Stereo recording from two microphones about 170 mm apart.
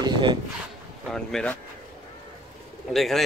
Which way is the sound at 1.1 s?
5° left (ahead or behind).